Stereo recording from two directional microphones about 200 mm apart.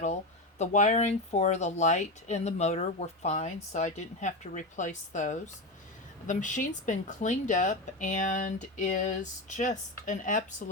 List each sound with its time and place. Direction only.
0.6 s speech: 35° left (ahead or behind)